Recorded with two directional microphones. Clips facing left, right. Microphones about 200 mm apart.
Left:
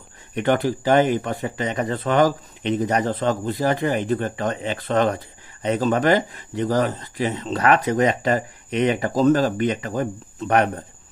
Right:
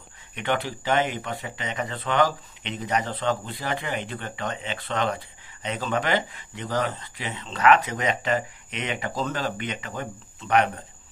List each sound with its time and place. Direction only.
0.3 s speech: 40° left (ahead or behind)